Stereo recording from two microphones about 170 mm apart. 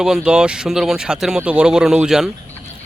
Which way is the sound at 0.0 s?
5° right (ahead or behind).